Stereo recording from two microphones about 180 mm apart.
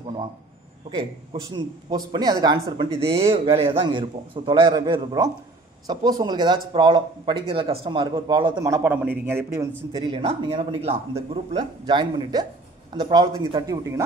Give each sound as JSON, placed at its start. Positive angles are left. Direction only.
{"t": 1.3, "sound": "speech", "side_deg": -25}
{"t": 9.9, "sound": "speech", "side_deg": -30}